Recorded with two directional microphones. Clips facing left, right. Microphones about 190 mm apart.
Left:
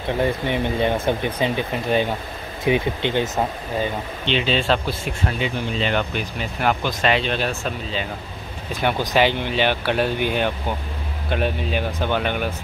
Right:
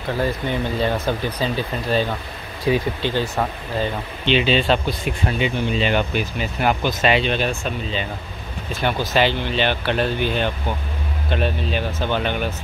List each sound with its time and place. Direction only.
0.1 s speech: 20° left (ahead or behind)
4.3 s speech: 5° right (ahead or behind)
8.8 s speech: 15° left (ahead or behind)